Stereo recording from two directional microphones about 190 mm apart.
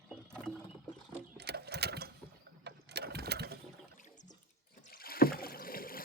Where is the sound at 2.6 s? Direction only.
60° right (ahead or behind).